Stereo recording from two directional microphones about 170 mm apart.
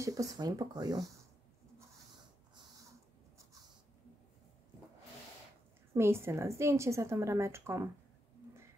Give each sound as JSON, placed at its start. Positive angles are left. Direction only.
{"t": 0.0, "sound": "speech", "side_deg": -20}
{"t": 5.9, "sound": "a woman's voice", "side_deg": -15}